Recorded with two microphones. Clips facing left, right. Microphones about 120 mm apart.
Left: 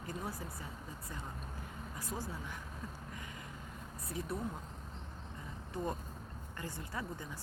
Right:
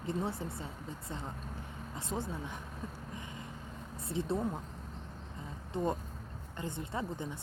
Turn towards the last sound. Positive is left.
turn(degrees=-25)  # may be behind; listen again after turning